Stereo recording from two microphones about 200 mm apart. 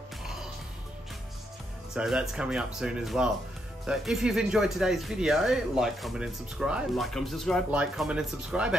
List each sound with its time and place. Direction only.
2.0 s speech: 5° right (ahead or behind)